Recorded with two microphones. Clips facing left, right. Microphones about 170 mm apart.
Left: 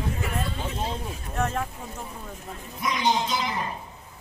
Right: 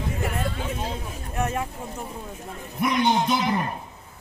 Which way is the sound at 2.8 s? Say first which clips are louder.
Right 4 dB; 60° right (ahead or behind).